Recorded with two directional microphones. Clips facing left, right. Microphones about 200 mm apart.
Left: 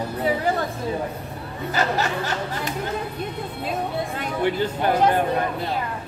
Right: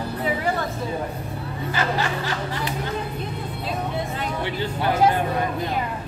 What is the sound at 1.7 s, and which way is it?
Speech, 40° left (ahead or behind).